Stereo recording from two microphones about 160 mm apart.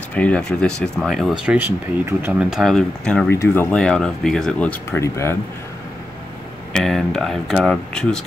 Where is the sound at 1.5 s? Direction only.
10° right (ahead or behind); by 3.3 s 5° left (ahead or behind).